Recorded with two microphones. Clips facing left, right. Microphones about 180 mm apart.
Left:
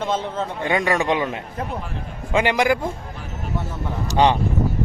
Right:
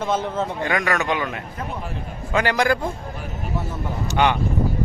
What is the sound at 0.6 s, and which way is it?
A man's voice, 25° left (ahead or behind).